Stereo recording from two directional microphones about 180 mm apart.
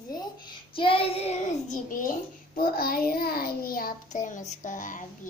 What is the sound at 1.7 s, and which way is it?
A child's voice, 50° left (ahead or behind).